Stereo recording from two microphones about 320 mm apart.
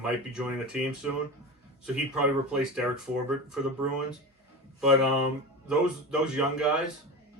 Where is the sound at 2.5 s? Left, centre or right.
Centre.